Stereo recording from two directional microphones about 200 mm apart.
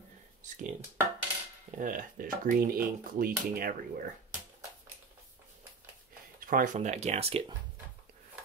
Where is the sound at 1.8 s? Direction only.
40° right (ahead or behind).